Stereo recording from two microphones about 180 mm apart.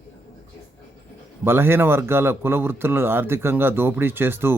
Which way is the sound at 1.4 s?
10° right (ahead or behind).